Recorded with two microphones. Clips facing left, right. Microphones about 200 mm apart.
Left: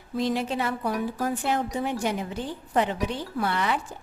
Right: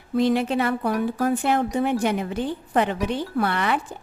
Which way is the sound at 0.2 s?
60° right (ahead or behind).